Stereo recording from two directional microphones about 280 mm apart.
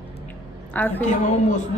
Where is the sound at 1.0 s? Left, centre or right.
Left.